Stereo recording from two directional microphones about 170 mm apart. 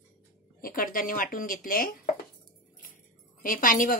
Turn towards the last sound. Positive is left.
turn(degrees=50)  # may be behind; listen again after turning